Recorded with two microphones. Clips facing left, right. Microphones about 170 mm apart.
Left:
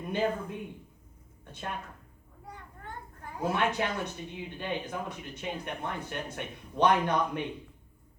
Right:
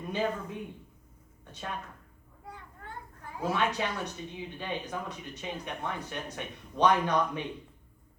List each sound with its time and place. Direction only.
0.1 s speech: 55° left (ahead or behind)
3.2 s speech: 55° left (ahead or behind)